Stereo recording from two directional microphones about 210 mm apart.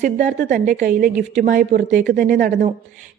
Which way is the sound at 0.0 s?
35° right (ahead or behind).